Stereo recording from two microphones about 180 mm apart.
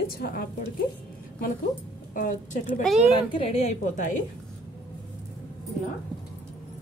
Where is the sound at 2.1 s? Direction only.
50° left (ahead or behind).